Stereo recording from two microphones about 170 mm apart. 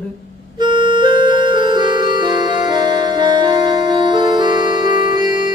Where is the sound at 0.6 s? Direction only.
25° right (ahead or behind).